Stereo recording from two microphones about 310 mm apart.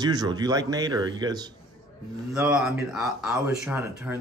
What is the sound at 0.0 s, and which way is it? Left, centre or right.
Speech, centre.